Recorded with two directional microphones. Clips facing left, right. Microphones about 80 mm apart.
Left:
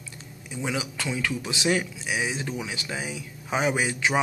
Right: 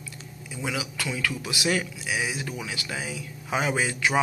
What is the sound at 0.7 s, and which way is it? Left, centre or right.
Speech, left.